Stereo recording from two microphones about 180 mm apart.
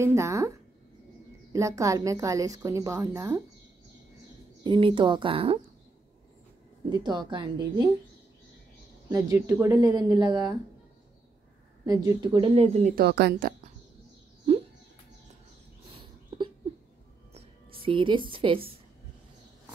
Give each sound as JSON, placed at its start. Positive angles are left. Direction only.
{"t": 0.0, "sound": "a woman's voice", "side_deg": -15}
{"t": 4.6, "sound": "speech", "side_deg": -25}
{"t": 6.9, "sound": "speech", "side_deg": -25}
{"t": 9.1, "sound": "speech", "side_deg": -20}
{"t": 11.8, "sound": "speech", "side_deg": -20}
{"t": 12.4, "sound": "speech", "side_deg": -30}
{"t": 12.9, "sound": "a woman's voice", "side_deg": -65}
{"t": 17.8, "sound": "speech", "side_deg": -25}